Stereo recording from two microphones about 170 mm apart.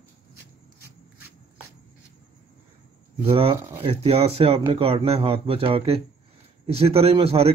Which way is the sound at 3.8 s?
35° right (ahead or behind).